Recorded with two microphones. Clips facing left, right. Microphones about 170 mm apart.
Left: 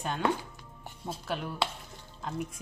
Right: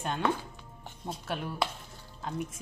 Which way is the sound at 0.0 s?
Centre (ahead or behind).